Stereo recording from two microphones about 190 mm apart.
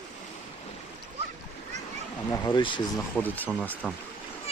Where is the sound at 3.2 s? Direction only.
10° left (ahead or behind).